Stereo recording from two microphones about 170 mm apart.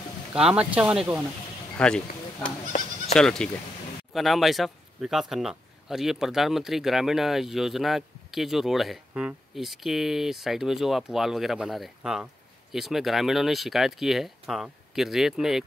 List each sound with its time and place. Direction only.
0.3 s speech: 5° right (ahead or behind)
1.8 s speech: 5° left (ahead or behind)
2.6 s speech: 40° left (ahead or behind)
3.2 s speech: 5° left (ahead or behind)